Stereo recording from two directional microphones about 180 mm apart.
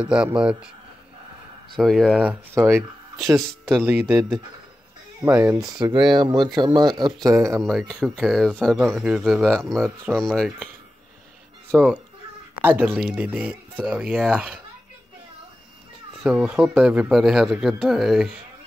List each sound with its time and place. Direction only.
0.0 s speech: 5° right (ahead or behind)
1.8 s speech: centre (ahead or behind)
3.3 s speech: centre (ahead or behind)
5.2 s speech: 15° right (ahead or behind)
7.6 s speech: centre (ahead or behind)
11.7 s speech: 5° right (ahead or behind)
16.2 s speech: 5° right (ahead or behind)